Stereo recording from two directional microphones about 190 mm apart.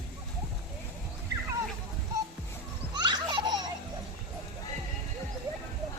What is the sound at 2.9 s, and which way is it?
Baby laughter, 20° right (ahead or behind).